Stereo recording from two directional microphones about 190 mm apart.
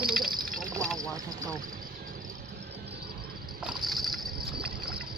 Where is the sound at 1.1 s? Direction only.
20° right (ahead or behind).